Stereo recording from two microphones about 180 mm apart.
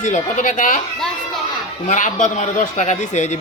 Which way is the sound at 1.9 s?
45° left (ahead or behind).